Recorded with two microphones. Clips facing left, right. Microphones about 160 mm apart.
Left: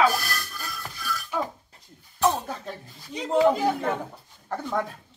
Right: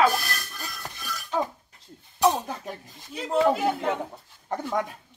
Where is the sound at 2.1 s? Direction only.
15° right (ahead or behind).